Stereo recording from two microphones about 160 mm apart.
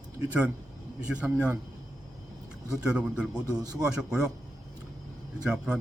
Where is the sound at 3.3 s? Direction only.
25° right (ahead or behind).